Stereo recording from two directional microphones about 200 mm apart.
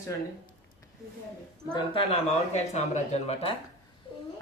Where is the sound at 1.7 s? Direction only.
30° left (ahead or behind).